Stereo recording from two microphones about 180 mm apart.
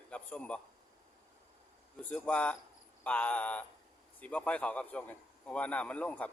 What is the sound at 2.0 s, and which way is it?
A man's voice, 10° left (ahead or behind).